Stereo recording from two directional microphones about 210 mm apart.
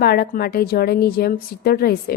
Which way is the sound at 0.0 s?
50° left (ahead or behind).